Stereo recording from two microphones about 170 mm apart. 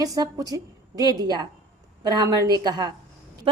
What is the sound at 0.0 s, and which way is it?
A woman's voice, 20° right (ahead or behind).